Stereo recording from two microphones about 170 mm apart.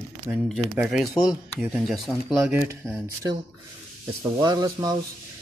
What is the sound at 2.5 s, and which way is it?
Speech, 15° right (ahead or behind).